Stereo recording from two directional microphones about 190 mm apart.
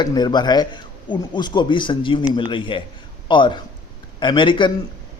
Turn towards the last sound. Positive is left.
turn(degrees=25)  # may be behind; listen again after turning